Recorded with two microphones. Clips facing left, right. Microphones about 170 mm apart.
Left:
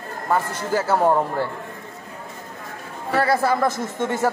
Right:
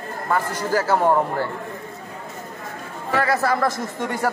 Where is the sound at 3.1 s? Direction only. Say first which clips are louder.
Left 1 dB; 30° left (ahead or behind).